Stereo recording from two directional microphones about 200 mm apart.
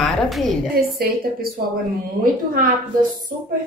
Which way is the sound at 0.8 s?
50° right (ahead or behind).